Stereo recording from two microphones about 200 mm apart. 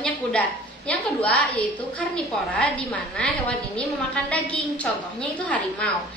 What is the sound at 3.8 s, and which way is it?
A woman's voice, 5° left (ahead or behind).